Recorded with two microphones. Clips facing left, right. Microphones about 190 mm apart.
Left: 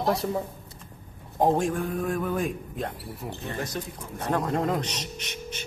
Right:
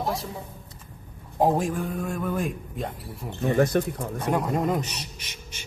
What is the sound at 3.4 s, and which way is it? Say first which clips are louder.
Speech: right 14 dB; 55° right (ahead or behind).